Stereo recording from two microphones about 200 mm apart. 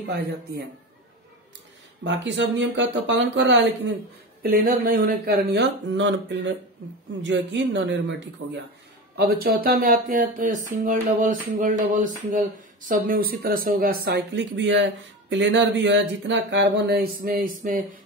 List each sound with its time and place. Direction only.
0.1 s speech: 50° right (ahead or behind)
2.0 s speech: 65° right (ahead or behind)
4.4 s speech: 50° right (ahead or behind); by 8.6 s 65° right (ahead or behind)
9.1 s speech: 50° right (ahead or behind)